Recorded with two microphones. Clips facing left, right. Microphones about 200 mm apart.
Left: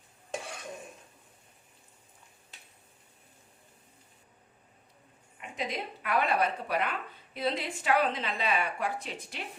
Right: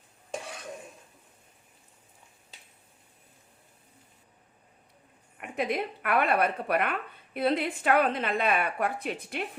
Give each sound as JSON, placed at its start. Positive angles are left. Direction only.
{"t": 5.4, "sound": "a woman's voice", "side_deg": -60}